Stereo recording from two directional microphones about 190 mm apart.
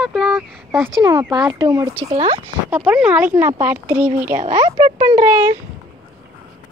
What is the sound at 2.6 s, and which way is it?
Speech, 10° right (ahead or behind).